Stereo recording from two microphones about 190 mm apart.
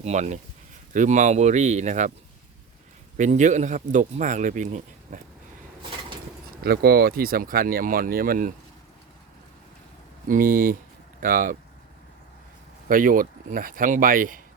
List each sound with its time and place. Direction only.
0.0 s speech: 40° right (ahead or behind)
3.2 s speech: 40° right (ahead or behind)
6.6 s speech: 55° right (ahead or behind)
10.2 s speech: 45° right (ahead or behind)
12.9 s speech: 45° right (ahead or behind)